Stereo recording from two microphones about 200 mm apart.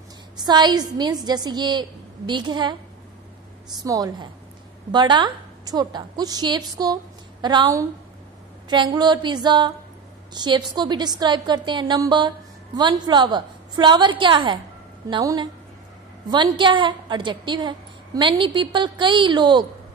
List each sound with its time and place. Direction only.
0.4 s a woman's voice: 20° right (ahead or behind)
3.8 s a woman's voice: 20° right (ahead or behind)